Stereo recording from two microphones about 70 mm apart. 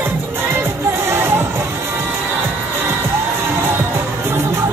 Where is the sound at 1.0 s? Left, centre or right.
Right.